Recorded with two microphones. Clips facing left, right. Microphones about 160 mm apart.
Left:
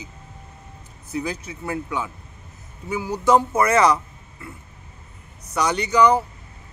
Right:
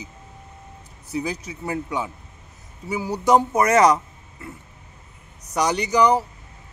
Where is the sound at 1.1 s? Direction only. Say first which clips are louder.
Even; 15° right (ahead or behind).